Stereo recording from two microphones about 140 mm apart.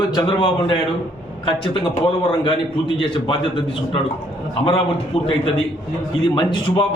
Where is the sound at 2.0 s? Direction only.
35° left (ahead or behind).